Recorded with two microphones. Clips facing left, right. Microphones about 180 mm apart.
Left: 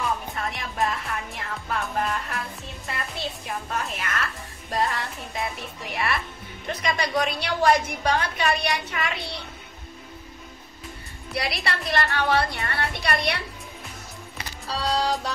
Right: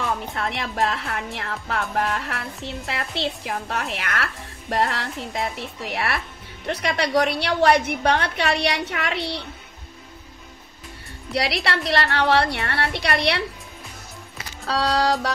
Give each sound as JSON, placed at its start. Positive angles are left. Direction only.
{"t": 0.0, "sound": "a woman's voice", "side_deg": -75}
{"t": 11.3, "sound": "a woman's voice", "side_deg": -70}
{"t": 14.7, "sound": "a woman's voice", "side_deg": -75}